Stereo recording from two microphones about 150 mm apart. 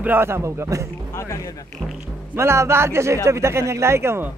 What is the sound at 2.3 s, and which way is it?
A man's voice, 20° right (ahead or behind).